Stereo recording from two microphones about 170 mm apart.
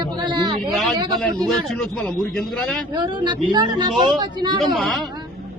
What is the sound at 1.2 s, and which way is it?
Speech, 5° left (ahead or behind).